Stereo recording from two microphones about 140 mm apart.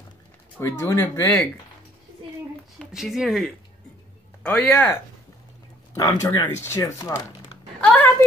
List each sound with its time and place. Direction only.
0.6 s speech: 20° left (ahead or behind)
2.9 s speech: 5° right (ahead or behind)
5.9 s speech: 25° left (ahead or behind)
7.8 s a sound: 10° left (ahead or behind)